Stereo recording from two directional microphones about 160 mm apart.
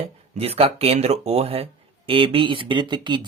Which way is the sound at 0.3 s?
40° right (ahead or behind).